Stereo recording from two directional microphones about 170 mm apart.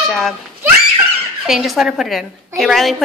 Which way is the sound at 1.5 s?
Centre (ahead or behind).